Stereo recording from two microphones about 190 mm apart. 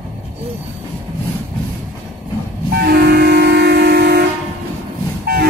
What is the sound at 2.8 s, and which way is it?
Vehicle, 55° right (ahead or behind).